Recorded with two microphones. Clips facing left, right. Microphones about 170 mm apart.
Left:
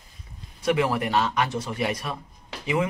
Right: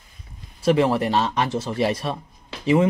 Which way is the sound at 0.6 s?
30° right (ahead or behind).